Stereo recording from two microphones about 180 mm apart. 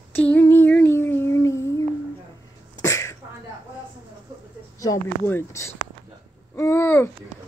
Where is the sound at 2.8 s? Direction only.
15° left (ahead or behind).